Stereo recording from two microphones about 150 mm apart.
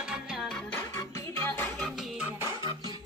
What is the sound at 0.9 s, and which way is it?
Music, 15° left (ahead or behind).